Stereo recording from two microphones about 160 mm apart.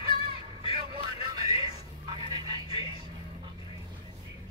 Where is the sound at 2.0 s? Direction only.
30° right (ahead or behind).